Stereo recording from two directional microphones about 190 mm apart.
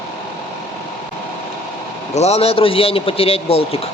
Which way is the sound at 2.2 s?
35° left (ahead or behind).